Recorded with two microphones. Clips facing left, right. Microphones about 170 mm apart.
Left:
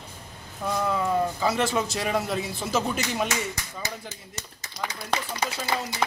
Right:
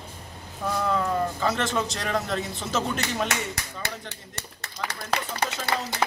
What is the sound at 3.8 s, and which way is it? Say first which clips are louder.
Speech: even; 65° right (ahead or behind).